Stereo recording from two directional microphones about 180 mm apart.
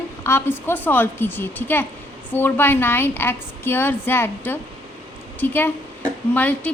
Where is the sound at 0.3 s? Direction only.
15° left (ahead or behind).